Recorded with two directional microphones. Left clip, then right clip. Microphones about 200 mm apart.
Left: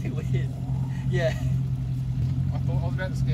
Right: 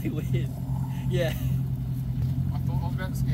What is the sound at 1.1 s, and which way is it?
Speech, 15° right (ahead or behind).